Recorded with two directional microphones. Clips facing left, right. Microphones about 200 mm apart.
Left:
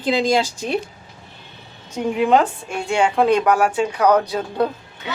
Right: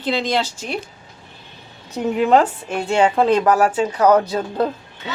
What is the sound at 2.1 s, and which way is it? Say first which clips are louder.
Speech: right 1 dB; 5° right (ahead or behind).